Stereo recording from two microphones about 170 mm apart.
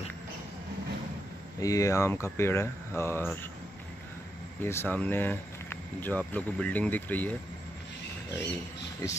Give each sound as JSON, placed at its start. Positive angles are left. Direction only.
{"t": 1.6, "sound": "speech", "side_deg": 20}
{"t": 4.6, "sound": "speech", "side_deg": 10}
{"t": 9.0, "sound": "speech", "side_deg": 20}